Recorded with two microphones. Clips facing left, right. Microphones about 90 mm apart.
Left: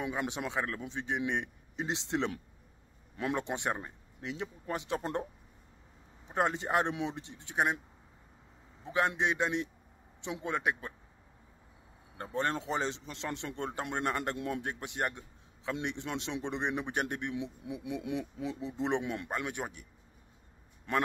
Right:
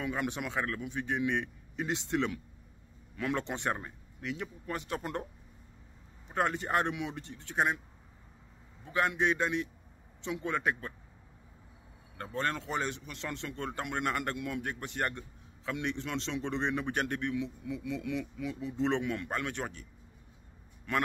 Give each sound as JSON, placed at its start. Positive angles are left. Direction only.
{"t": 0.0, "sound": "speech", "side_deg": 20}
{"t": 3.3, "sound": "speech", "side_deg": 15}
{"t": 6.2, "sound": "speech", "side_deg": 20}
{"t": 8.8, "sound": "a man's voice", "side_deg": 25}
{"t": 12.2, "sound": "a man's voice", "side_deg": 20}
{"t": 20.9, "sound": "speech", "side_deg": 25}